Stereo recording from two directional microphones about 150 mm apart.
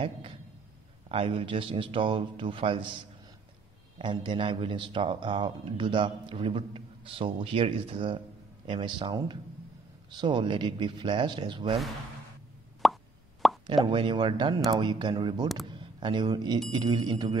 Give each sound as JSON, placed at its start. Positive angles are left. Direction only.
{"t": 1.0, "sound": "a man's voice", "side_deg": -40}
{"t": 4.0, "sound": "a man's voice", "side_deg": -30}
{"t": 12.8, "sound": "plop", "side_deg": 0}
{"t": 13.8, "sound": "a man's voice", "side_deg": -30}